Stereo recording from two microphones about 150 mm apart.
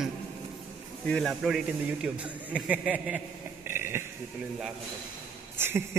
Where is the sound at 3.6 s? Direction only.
15° right (ahead or behind).